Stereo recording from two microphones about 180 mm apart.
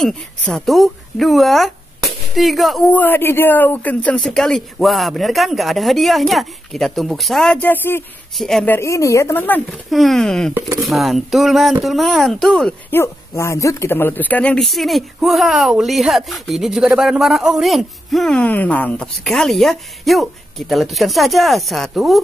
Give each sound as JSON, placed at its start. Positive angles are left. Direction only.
{"t": 0.0, "sound": "speech", "side_deg": 0}
{"t": 8.7, "sound": "a woman's voice", "side_deg": 15}
{"t": 9.8, "sound": "speech", "side_deg": 0}
{"t": 10.5, "sound": "speech", "side_deg": -20}
{"t": 10.9, "sound": "speech", "side_deg": 0}
{"t": 12.9, "sound": "speech", "side_deg": 15}